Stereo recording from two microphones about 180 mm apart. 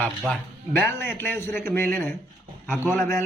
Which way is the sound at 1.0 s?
10° left (ahead or behind).